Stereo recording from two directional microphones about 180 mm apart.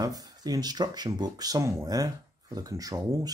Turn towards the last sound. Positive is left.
turn(degrees=-20)  # may be behind; listen again after turning